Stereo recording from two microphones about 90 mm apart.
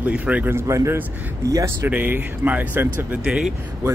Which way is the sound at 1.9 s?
20° right (ahead or behind).